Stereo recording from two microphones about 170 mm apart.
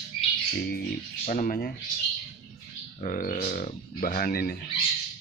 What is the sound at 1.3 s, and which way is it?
Speech, 55° left (ahead or behind).